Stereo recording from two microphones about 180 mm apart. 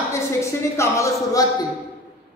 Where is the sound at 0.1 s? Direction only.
15° left (ahead or behind).